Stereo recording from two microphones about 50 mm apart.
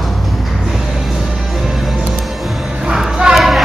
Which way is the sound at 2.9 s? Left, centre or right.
Centre.